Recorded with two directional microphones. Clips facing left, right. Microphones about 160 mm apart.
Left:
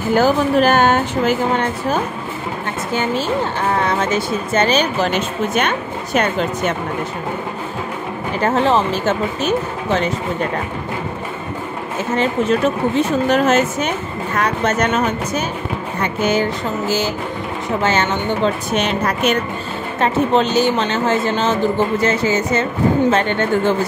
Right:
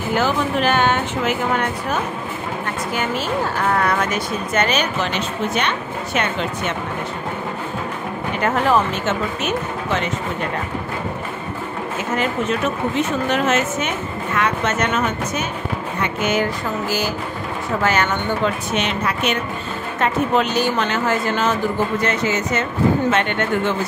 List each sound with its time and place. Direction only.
0.1 s a woman's voice: 40° left (ahead or behind)
5.1 s a woman's voice: 50° left (ahead or behind)
8.4 s a woman's voice: 30° left (ahead or behind)
12.2 s a woman's voice: 35° left (ahead or behind)
20.0 s speech: 30° left (ahead or behind)